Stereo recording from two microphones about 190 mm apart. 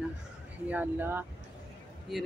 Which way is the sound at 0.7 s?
10° right (ahead or behind).